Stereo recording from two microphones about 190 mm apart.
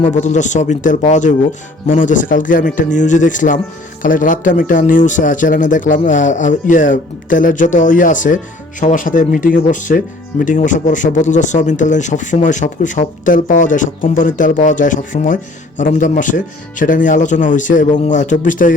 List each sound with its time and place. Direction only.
0.0 s speech: 40° left (ahead or behind)